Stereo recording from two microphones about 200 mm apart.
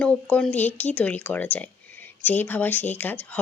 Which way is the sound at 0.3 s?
5° left (ahead or behind).